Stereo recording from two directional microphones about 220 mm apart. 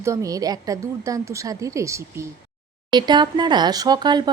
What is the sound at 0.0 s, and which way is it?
A woman's voice, 15° right (ahead or behind).